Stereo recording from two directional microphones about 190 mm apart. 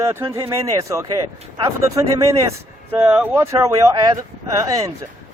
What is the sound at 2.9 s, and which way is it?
Speech, 10° right (ahead or behind).